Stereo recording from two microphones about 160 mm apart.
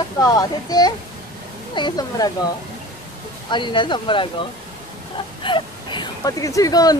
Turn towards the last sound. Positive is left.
turn(degrees=25)  # may be behind; listen again after turning